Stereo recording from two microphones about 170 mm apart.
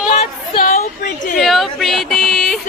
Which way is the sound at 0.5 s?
55° left (ahead or behind).